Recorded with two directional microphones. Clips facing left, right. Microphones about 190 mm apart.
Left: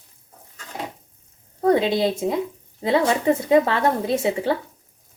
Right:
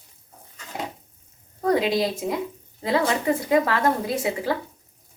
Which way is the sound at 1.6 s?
25° left (ahead or behind).